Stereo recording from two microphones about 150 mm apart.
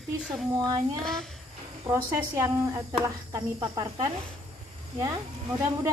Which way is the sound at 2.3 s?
25° right (ahead or behind).